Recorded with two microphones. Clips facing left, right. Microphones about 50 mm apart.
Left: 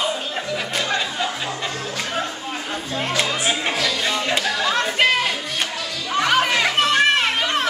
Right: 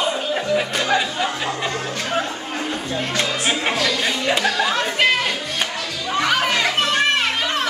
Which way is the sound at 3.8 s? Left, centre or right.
Centre.